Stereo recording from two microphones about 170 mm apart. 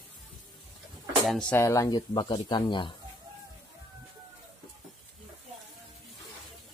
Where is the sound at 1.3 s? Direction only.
5° left (ahead or behind).